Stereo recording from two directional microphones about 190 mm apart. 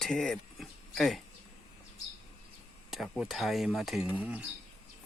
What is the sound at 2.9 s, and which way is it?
Speech, centre (ahead or behind).